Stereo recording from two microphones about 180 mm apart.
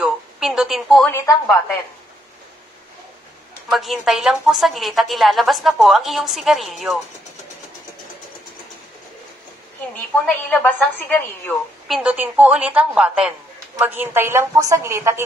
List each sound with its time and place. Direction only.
0.0 s a sound: 5° right (ahead or behind)
1.1 s a woman's voice: 15° left (ahead or behind)
3.6 s a woman's voice: centre (ahead or behind)
10.2 s a woman's voice: 10° left (ahead or behind)
11.9 s a woman's voice: 5° right (ahead or behind)